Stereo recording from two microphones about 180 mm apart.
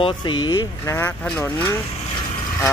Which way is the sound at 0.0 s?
25° left (ahead or behind).